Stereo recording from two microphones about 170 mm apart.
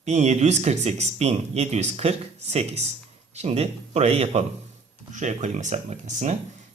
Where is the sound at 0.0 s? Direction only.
40° right (ahead or behind).